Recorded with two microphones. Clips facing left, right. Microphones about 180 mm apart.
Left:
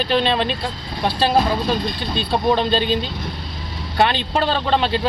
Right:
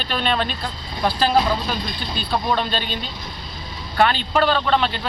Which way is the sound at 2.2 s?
30° left (ahead or behind).